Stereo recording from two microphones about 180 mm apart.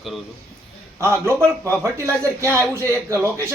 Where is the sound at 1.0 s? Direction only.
15° right (ahead or behind).